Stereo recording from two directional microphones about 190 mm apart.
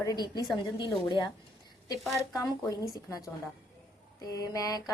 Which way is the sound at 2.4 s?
20° left (ahead or behind).